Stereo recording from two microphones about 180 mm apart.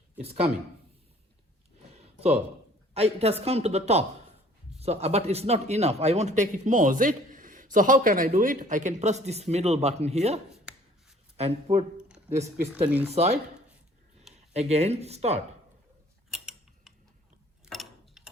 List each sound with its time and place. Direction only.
0.2 s a man's voice: 35° right (ahead or behind)
2.9 s a man's voice: 35° right (ahead or behind)
10.7 s a sound: 5° right (ahead or behind)
11.3 s a man's voice: 35° right (ahead or behind)
11.9 s a sound: 5° right (ahead or behind)
13.1 s a man's voice: 35° right (ahead or behind)
14.5 s a man's voice: 35° right (ahead or behind)
16.3 s a sound: centre (ahead or behind)
17.7 s mechanisms: centre (ahead or behind)